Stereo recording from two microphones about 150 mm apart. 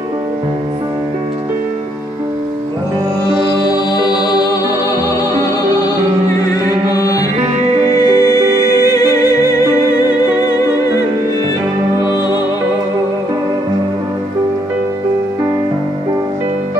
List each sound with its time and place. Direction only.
5.3 s music: 25° left (ahead or behind)
6.9 s music: 20° left (ahead or behind)